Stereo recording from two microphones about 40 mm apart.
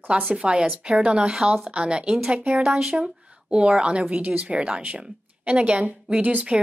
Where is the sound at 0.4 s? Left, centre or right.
Right.